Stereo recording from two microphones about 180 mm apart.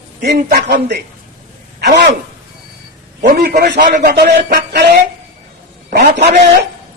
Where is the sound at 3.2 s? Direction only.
60° right (ahead or behind).